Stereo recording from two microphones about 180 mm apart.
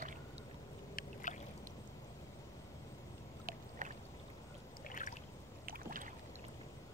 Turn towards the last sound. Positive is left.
turn(degrees=-50)  # may be behind; listen again after turning